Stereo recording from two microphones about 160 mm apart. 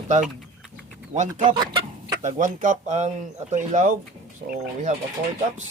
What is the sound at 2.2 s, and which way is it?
Speech, 55° right (ahead or behind).